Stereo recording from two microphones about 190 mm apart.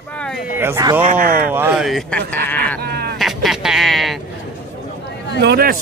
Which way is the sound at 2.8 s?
55° right (ahead or behind).